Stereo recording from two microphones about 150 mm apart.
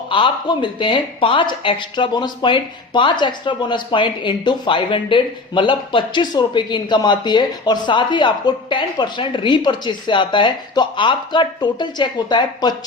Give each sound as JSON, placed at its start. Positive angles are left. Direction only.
{"t": 0.1, "sound": "speech", "side_deg": 30}